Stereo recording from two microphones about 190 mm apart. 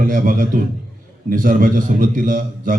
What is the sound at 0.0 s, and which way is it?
A man's voice, 45° right (ahead or behind).